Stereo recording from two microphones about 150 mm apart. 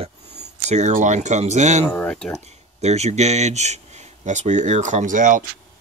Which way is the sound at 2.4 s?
50° right (ahead or behind).